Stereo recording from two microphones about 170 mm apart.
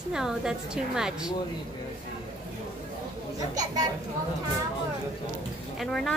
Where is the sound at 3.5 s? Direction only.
20° right (ahead or behind).